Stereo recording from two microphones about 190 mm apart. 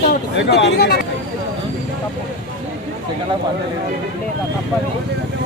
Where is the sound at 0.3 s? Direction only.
65° left (ahead or behind).